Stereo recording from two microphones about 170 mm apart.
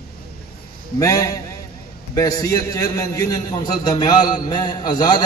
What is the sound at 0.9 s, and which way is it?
A man's voice, 20° left (ahead or behind).